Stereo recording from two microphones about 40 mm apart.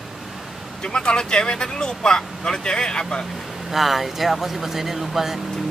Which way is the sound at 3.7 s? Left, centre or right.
Centre.